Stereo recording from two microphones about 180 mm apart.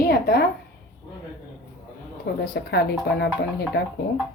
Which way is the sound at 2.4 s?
70° left (ahead or behind).